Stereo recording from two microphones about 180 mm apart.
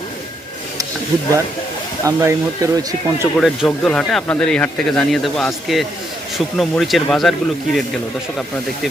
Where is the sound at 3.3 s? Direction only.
Centre (ahead or behind).